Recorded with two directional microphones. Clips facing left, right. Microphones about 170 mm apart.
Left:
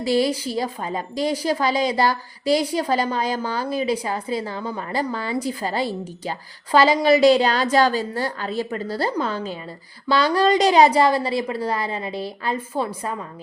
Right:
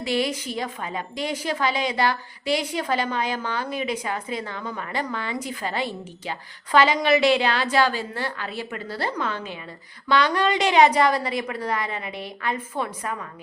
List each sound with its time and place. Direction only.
0.0 s a woman's voice: 35° left (ahead or behind)